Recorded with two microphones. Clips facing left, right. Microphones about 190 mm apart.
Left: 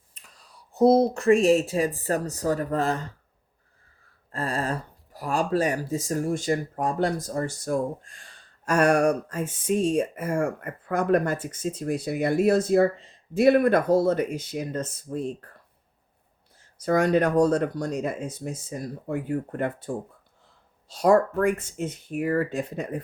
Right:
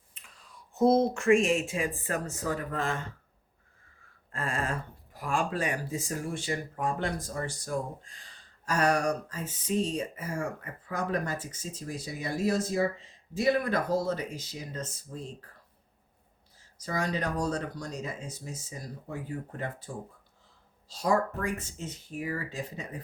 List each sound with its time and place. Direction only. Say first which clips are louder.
0.1 s speech: left 1 dB; 35° left (ahead or behind)
4.3 s speech: left 5 dB; 35° left (ahead or behind); by 15.4 s 55° left (ahead or behind)
16.8 s speech: left 11 dB; 55° left (ahead or behind)
20.9 s speech: left 8 dB; 55° left (ahead or behind)